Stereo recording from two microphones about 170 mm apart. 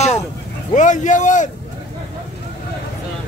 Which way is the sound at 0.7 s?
45° left (ahead or behind).